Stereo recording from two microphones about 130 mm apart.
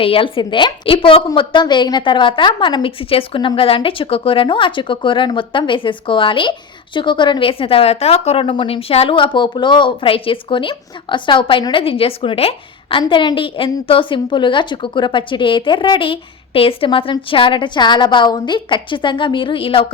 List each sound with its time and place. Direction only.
0.0 s a woman's voice: 45° left (ahead or behind)